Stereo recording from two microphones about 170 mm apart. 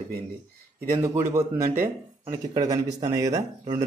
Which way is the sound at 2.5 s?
25° right (ahead or behind).